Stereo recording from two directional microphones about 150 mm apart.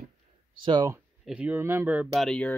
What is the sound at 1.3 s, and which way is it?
Speech, 10° right (ahead or behind).